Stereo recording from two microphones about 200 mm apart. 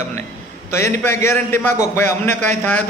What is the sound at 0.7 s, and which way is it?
A man's voice, 15° left (ahead or behind).